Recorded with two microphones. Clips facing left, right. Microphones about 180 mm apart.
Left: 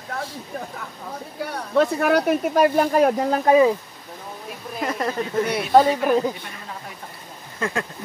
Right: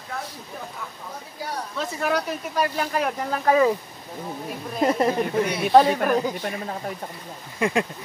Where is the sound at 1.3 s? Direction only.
60° left (ahead or behind); by 3.4 s 40° left (ahead or behind).